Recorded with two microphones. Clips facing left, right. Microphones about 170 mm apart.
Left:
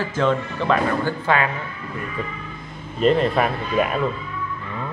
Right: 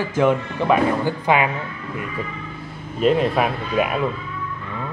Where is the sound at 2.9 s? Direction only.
5° right (ahead or behind).